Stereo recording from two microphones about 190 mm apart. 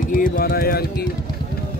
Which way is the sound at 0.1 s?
50° left (ahead or behind).